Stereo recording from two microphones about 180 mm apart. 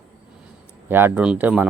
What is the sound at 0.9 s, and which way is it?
Speech, 10° right (ahead or behind).